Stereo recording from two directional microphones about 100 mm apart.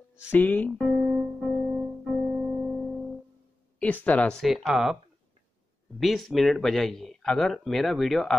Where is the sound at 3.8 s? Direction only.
15° left (ahead or behind).